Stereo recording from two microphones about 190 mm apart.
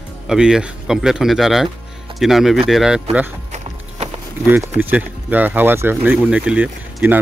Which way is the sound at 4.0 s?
35° right (ahead or behind).